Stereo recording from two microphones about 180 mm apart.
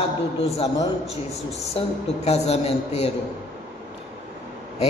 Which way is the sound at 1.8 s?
35° left (ahead or behind).